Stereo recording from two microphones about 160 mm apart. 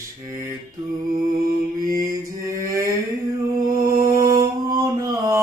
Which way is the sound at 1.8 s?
20° right (ahead or behind).